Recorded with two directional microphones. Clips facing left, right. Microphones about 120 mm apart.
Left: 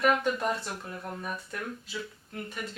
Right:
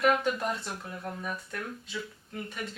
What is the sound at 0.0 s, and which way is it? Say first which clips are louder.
Speech: even; centre (ahead or behind).